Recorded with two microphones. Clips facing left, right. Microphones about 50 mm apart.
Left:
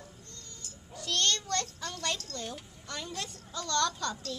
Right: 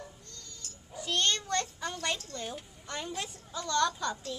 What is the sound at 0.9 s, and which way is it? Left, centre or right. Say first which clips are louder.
A child's voice: right 1 dB; centre.